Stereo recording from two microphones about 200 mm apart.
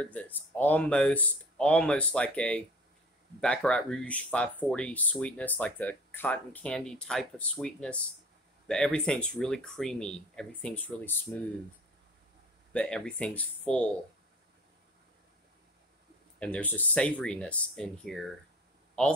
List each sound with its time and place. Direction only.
0.0 s speech: 5° left (ahead or behind)
12.7 s speech: 5° left (ahead or behind)
16.3 s speech: 5° left (ahead or behind)